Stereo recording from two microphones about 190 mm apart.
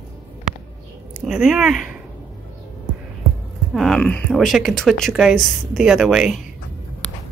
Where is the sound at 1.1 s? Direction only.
5° right (ahead or behind).